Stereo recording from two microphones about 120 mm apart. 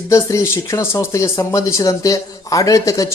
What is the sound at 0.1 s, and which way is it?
Speech, 25° left (ahead or behind).